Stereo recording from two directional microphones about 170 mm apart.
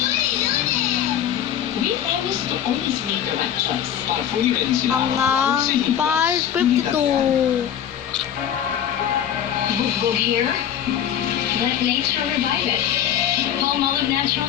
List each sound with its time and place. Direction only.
5.1 s speech: 15° right (ahead or behind)